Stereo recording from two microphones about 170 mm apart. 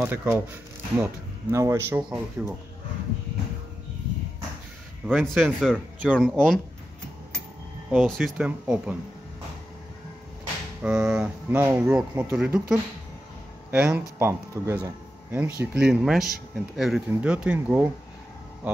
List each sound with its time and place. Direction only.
0.0 s speech: 10° right (ahead or behind)
5.0 s speech: centre (ahead or behind)
7.9 s speech: 5° right (ahead or behind)
10.8 s speech: 5° right (ahead or behind)
12.3 s speech: 5° right (ahead or behind)